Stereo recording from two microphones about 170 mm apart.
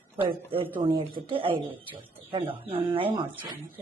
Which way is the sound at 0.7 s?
30° right (ahead or behind).